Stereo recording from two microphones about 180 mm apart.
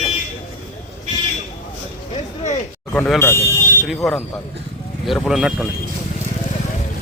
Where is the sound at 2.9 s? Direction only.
10° left (ahead or behind).